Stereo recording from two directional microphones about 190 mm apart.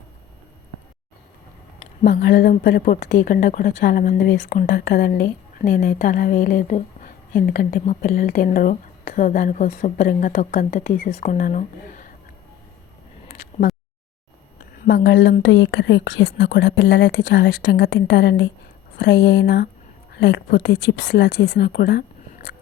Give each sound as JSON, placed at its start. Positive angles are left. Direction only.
{"t": 2.0, "sound": "a woman's voice", "side_deg": 55}
{"t": 14.8, "sound": "a woman's voice", "side_deg": 70}